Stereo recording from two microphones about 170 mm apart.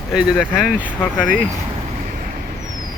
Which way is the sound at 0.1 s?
5° right (ahead or behind).